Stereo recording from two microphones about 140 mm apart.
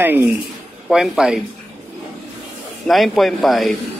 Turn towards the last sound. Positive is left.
turn(degrees=0)  # may be behind; listen again after turning